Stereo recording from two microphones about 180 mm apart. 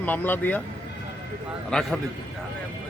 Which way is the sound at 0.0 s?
10° left (ahead or behind).